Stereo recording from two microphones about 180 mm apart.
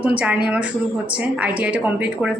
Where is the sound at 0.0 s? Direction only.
5° right (ahead or behind).